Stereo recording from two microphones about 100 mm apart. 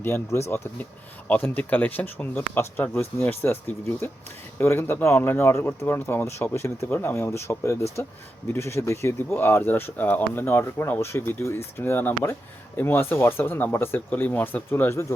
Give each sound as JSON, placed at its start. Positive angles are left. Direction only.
{"t": 0.0, "sound": "speech", "side_deg": 25}